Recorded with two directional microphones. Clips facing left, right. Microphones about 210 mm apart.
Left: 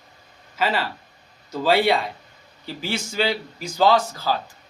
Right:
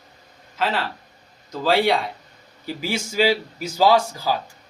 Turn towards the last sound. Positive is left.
turn(degrees=-10)  # may be behind; listen again after turning